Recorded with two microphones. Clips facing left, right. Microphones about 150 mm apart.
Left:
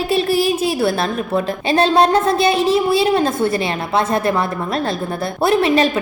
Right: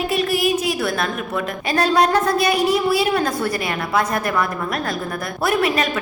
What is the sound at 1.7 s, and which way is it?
A woman's voice, 25° left (ahead or behind).